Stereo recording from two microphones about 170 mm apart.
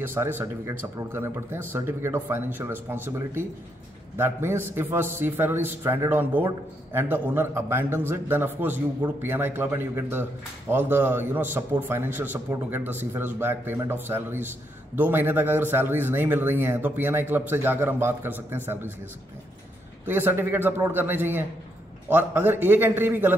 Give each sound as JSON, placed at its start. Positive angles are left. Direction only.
{"t": 0.0, "sound": "a man's voice", "side_deg": -15}
{"t": 20.1, "sound": "a man's voice", "side_deg": -15}